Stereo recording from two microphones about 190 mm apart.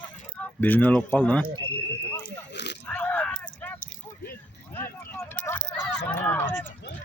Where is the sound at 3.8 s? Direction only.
50° left (ahead or behind).